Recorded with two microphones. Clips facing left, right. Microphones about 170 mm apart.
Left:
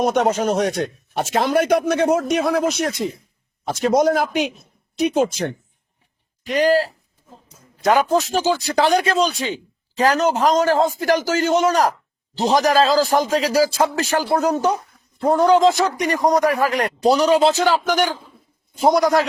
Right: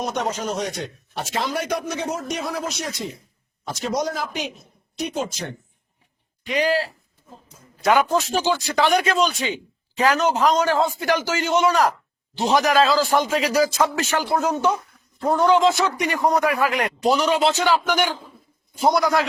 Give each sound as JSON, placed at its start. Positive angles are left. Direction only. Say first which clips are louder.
{"t": 0.0, "sound": "a man's voice", "louder": "left 8 dB", "side_deg": 55}
{"t": 7.9, "sound": "a man's voice", "louder": "left 2 dB", "side_deg": 35}